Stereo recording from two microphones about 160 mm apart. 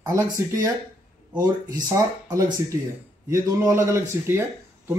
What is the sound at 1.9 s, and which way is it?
Speech, 20° right (ahead or behind).